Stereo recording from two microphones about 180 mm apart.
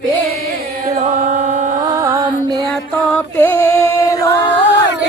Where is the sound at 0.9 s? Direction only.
40° right (ahead or behind).